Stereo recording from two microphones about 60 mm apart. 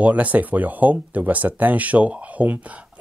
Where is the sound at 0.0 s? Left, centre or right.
Right.